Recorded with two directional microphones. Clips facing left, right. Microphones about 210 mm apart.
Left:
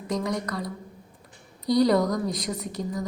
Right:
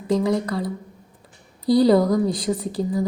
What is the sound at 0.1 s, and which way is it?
A woman's voice, 30° right (ahead or behind).